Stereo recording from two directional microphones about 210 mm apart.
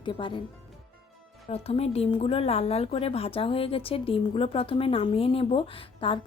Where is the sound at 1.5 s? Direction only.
30° left (ahead or behind).